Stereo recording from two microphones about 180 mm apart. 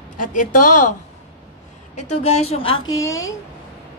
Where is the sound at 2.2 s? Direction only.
35° left (ahead or behind).